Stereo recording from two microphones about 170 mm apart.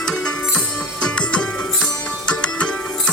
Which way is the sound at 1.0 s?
5° left (ahead or behind).